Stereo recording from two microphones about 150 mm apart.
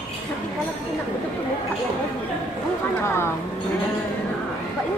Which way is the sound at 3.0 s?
15° left (ahead or behind).